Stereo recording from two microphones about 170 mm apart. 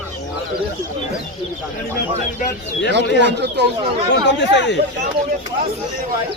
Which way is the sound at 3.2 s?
90° right.